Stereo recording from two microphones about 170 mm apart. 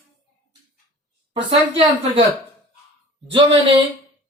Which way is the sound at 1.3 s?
30° right (ahead or behind).